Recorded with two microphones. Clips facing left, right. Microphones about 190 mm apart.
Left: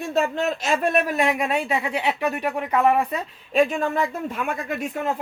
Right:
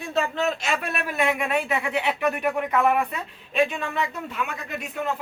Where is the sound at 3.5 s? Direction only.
45° left (ahead or behind).